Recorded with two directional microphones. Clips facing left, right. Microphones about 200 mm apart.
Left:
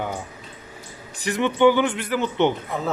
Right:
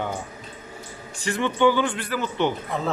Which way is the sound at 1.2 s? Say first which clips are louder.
Left 3 dB; 15° left (ahead or behind).